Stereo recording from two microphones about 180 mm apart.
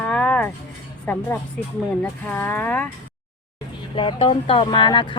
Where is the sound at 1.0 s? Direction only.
10° left (ahead or behind).